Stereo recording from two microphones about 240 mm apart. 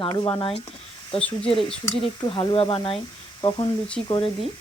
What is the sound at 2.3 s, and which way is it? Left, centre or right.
Speech, left.